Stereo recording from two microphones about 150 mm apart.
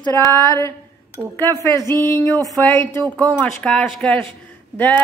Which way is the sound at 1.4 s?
20° right (ahead or behind).